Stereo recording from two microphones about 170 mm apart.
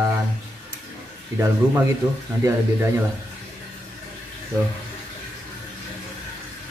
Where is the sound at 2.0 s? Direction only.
25° right (ahead or behind).